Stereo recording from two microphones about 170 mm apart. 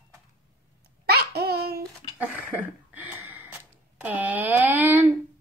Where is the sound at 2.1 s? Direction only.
10° right (ahead or behind).